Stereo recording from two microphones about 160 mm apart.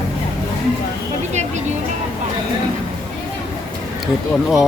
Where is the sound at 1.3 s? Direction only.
45° right (ahead or behind).